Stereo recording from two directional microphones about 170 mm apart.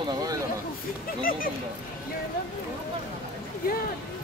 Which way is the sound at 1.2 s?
55° left (ahead or behind).